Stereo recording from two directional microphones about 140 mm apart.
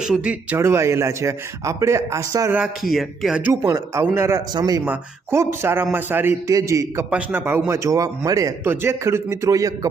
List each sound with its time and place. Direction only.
0.0 s speech: 5° right (ahead or behind)
0.5 s a man's voice: 20° right (ahead or behind)
2.9 s speech: centre (ahead or behind)
3.4 s a man's voice: 10° right (ahead or behind)
7.1 s a man's voice: 10° right (ahead or behind)